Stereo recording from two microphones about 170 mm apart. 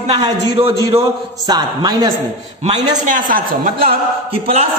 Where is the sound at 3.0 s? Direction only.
50° right (ahead or behind).